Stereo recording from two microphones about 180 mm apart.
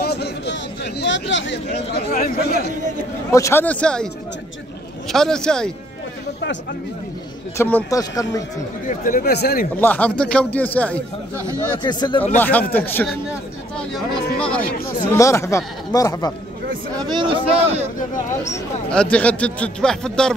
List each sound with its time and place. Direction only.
0.0 s chatter: 65° left (ahead or behind); by 1.5 s 90° left
1.7 s speech: 50° left (ahead or behind)
3.3 s a man's voice: 15° left (ahead or behind)
7.5 s speech: 15° left (ahead or behind)
8.8 s speech: 50° left (ahead or behind)
9.8 s speech: 10° left (ahead or behind)
11.8 s speech: 25° left (ahead or behind)
12.4 s speech: 10° left (ahead or behind)
17.0 s a man's voice: 25° right (ahead or behind)
18.9 s a man's voice: 5° left (ahead or behind)